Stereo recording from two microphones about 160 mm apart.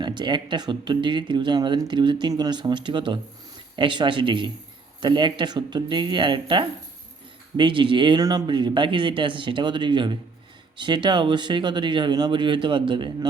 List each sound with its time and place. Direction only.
0.0 s speech: 30° right (ahead or behind)